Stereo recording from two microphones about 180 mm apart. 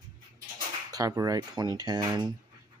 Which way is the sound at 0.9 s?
20° right (ahead or behind).